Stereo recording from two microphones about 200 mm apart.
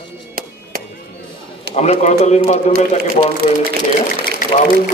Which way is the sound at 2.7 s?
50° right (ahead or behind).